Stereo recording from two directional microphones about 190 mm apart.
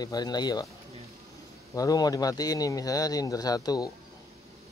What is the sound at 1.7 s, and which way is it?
Speech, 20° left (ahead or behind).